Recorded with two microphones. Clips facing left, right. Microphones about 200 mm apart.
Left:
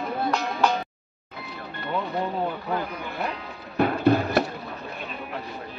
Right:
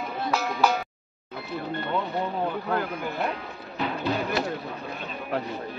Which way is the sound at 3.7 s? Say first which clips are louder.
Left 7 dB; 55° left (ahead or behind).